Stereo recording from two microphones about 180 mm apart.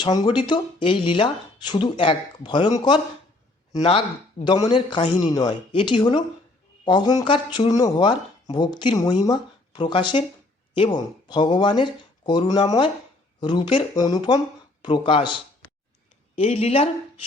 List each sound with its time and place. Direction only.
0.0 s speech: 25° left (ahead or behind)